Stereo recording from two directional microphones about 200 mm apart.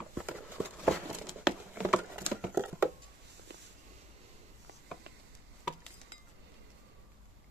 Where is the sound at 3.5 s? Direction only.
60° right (ahead or behind).